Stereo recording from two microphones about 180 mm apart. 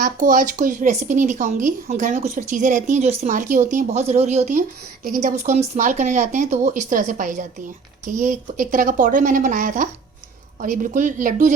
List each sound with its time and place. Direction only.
0.0 s speech: 50° right (ahead or behind)